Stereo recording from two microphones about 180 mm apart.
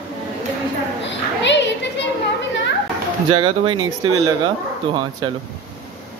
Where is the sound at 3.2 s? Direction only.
30° right (ahead or behind).